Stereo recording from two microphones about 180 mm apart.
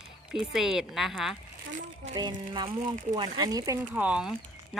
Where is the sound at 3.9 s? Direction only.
5° right (ahead or behind).